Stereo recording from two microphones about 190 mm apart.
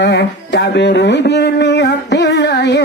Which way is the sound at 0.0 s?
65° left (ahead or behind).